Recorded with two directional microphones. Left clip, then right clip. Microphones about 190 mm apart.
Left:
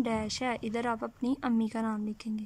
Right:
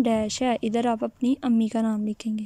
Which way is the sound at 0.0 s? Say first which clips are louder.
Right 8 dB; 20° right (ahead or behind).